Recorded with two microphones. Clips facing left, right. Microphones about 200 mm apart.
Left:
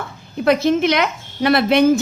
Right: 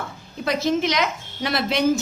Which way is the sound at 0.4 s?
60° left (ahead or behind).